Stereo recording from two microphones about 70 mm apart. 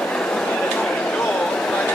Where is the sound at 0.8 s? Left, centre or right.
Centre.